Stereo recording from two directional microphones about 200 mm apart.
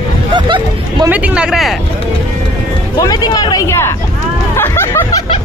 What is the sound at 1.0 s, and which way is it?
Speech, 5° right (ahead or behind).